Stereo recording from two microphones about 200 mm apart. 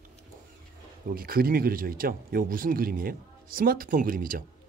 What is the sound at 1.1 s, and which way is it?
Speech, 50° right (ahead or behind).